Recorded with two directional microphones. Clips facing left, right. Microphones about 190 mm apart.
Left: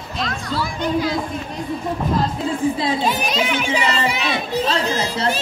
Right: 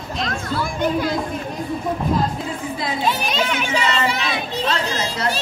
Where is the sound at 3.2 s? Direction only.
Centre (ahead or behind).